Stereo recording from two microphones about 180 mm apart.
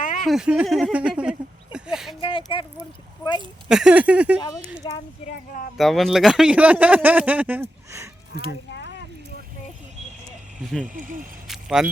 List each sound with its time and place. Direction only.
0.0 s a sound: 45° left (ahead or behind)
0.3 s speech: 5° right (ahead or behind)
2.2 s speech: 30° left (ahead or behind)
3.7 s speech: 5° right (ahead or behind)
4.8 s speech: 25° left (ahead or behind)
5.7 s speech: centre (ahead or behind); by 8.1 s 15° right (ahead or behind)
8.4 s a sound: 70° left (ahead or behind)
10.6 s speech: centre (ahead or behind)
10.8 s speech: 50° right (ahead or behind)
11.4 s keys jangling: centre (ahead or behind)